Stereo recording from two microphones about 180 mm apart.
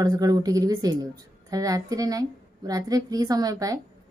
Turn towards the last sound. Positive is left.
turn(degrees=-20)  # may be behind; listen again after turning